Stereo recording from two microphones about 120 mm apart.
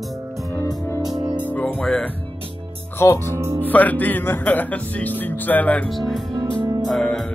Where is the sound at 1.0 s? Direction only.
35° right (ahead or behind).